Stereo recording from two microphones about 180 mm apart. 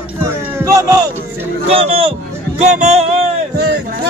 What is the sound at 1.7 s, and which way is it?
Speech, 30° right (ahead or behind).